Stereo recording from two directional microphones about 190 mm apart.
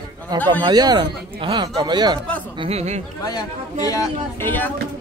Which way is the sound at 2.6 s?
35° right (ahead or behind).